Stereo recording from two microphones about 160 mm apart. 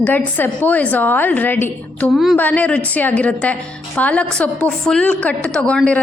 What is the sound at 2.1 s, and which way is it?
Speech, centre (ahead or behind).